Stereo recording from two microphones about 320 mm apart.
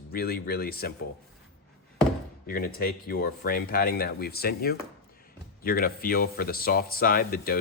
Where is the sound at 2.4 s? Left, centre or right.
Left.